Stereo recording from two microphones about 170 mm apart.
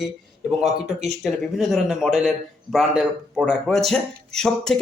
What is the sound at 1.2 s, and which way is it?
Speech, 5° right (ahead or behind).